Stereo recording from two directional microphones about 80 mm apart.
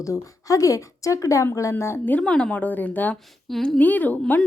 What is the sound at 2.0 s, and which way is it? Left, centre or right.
Speech, centre.